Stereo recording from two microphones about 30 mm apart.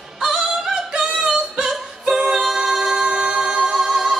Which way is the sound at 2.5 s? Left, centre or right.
Centre.